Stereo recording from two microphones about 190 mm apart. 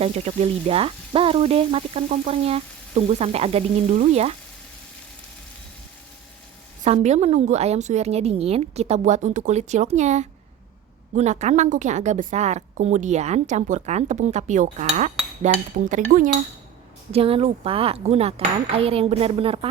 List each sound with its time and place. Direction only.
0.0 s a woman's voice: 35° right (ahead or behind)
6.8 s a woman's voice: 35° right (ahead or behind)
17.1 s a woman's voice: 30° right (ahead or behind)